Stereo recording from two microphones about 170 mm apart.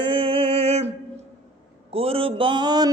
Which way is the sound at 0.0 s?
30° right (ahead or behind).